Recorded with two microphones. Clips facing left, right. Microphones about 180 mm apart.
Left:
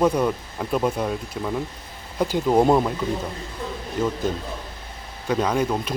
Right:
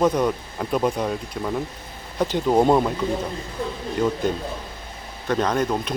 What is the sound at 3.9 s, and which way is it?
Speech, centre (ahead or behind).